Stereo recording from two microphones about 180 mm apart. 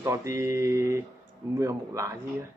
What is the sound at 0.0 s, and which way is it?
Mantra, 15° right (ahead or behind).